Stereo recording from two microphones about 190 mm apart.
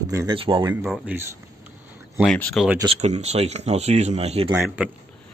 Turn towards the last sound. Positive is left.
turn(degrees=-15)  # may be behind; listen again after turning